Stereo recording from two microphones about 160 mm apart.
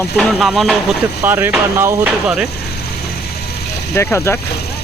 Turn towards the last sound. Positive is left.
turn(degrees=15)  # may be behind; listen again after turning